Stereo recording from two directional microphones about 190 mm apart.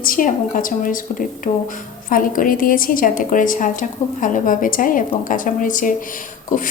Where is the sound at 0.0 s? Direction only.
45° left (ahead or behind).